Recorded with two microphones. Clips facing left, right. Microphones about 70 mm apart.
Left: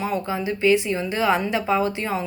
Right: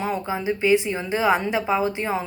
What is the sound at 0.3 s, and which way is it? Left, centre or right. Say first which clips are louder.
A woman's voice: even; right.